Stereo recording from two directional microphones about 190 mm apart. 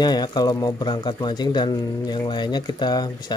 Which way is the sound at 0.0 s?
20° left (ahead or behind).